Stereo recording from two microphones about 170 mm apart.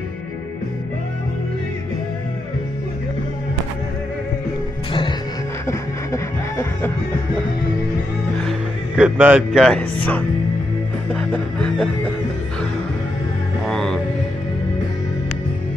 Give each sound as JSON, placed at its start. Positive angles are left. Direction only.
{"t": 5.7, "sound": "music", "side_deg": 15}
{"t": 8.4, "sound": "speech", "side_deg": 0}
{"t": 11.1, "sound": "music", "side_deg": 5}
{"t": 13.7, "sound": "music", "side_deg": 5}